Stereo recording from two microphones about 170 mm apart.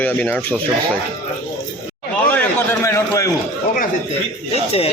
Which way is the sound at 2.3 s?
15° left (ahead or behind).